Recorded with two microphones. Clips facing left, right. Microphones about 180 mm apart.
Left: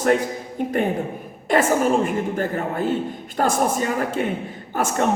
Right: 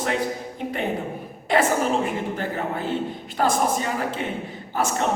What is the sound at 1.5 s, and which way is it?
A man's voice, 45° left (ahead or behind).